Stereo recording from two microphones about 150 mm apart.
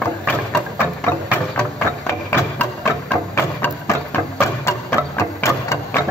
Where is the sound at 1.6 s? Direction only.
10° left (ahead or behind).